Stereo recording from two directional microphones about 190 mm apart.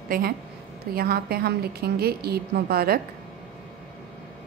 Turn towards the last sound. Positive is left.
turn(degrees=-55)  # may be behind; listen again after turning